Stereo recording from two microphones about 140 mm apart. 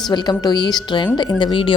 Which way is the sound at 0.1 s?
30° left (ahead or behind).